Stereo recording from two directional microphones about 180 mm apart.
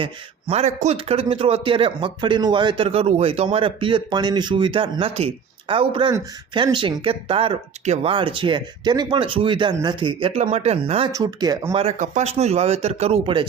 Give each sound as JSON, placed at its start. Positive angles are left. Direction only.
{"t": 0.0, "sound": "speech", "side_deg": -35}
{"t": 11.1, "sound": "speech", "side_deg": -20}